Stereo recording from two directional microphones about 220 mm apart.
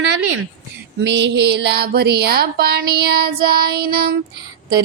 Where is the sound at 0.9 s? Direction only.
55° right (ahead or behind).